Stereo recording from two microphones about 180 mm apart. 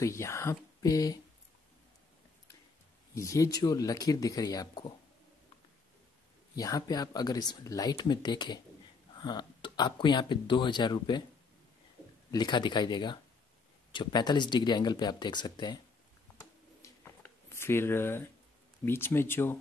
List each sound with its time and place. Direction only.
0.0 s speech: 15° left (ahead or behind)
3.2 s speech: 20° left (ahead or behind)
6.5 s speech: 20° left (ahead or behind)
12.3 s speech: 25° left (ahead or behind)
16.3 s a sound: 15° left (ahead or behind)
18.9 s speech: 15° left (ahead or behind)